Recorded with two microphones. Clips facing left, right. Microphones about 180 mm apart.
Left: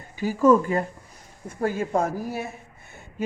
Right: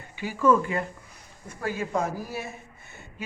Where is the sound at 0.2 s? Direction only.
40° left (ahead or behind).